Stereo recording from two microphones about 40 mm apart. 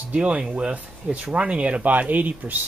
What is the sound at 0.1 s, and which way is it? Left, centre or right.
Speech, right.